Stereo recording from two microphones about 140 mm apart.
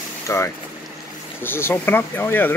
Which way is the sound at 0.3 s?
20° left (ahead or behind).